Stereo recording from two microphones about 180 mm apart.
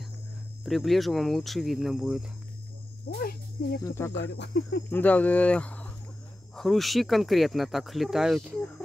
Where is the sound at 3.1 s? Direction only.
60° left (ahead or behind).